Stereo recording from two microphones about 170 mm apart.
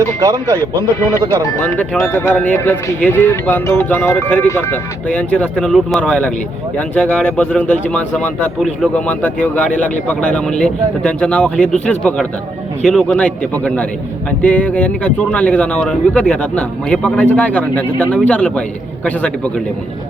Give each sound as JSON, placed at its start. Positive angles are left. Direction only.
{"t": 0.2, "sound": "speech", "side_deg": -20}
{"t": 1.6, "sound": "a man's voice", "side_deg": 10}